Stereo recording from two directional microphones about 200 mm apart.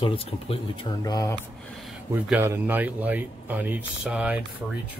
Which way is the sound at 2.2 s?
10° right (ahead or behind).